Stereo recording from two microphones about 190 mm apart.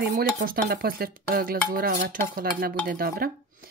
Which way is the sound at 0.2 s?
50° right (ahead or behind).